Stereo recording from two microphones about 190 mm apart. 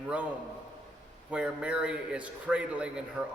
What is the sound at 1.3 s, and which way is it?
A man's voice, 5° right (ahead or behind).